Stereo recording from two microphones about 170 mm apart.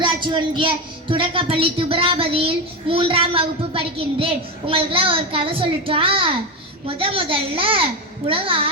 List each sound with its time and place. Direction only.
0.0 s a woman's voice: 25° right (ahead or behind)